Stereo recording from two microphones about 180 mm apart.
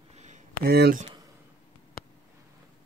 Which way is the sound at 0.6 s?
65° right (ahead or behind).